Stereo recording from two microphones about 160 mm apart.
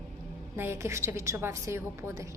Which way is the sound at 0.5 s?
15° right (ahead or behind).